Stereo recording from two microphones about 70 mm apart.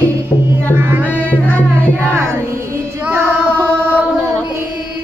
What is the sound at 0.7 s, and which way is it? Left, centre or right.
Music, right.